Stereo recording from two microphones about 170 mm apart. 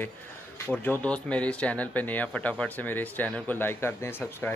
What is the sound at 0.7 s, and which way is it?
A man's voice, 10° left (ahead or behind).